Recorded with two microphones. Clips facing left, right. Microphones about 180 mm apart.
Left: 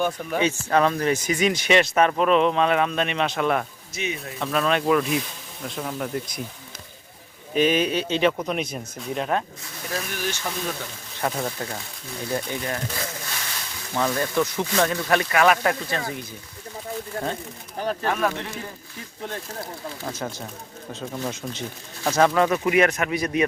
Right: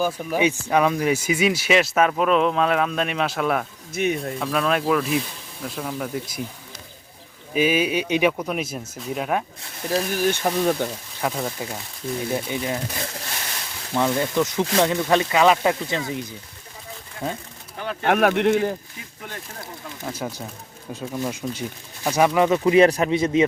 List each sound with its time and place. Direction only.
0.0 s speech: 5° right (ahead or behind)
3.9 s speech: 55° right (ahead or behind)
4.4 s speech: centre (ahead or behind)
7.5 s speech: 10° right (ahead or behind)
9.9 s speech: 35° right (ahead or behind)
10.5 s speech: 50° right (ahead or behind)
10.8 s speech: 70° right (ahead or behind)
11.2 s speech: centre (ahead or behind)
12.3 s speech: 15° right (ahead or behind)
18.0 s speech: 70° right (ahead or behind)
20.2 s speech: 5° right (ahead or behind); by 23.5 s 25° right (ahead or behind)